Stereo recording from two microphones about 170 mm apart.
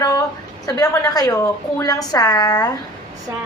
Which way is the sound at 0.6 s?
20° left (ahead or behind).